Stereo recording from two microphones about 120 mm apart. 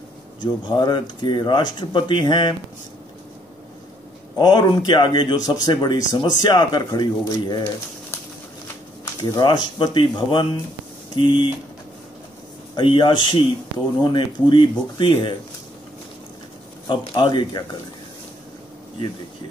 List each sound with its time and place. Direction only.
0.7 s speech: 40° left (ahead or behind)
4.4 s speech: 35° left (ahead or behind)
9.0 s speech: 30° left (ahead or behind)
12.7 s speech: 40° left (ahead or behind)
16.8 s speech: 40° left (ahead or behind)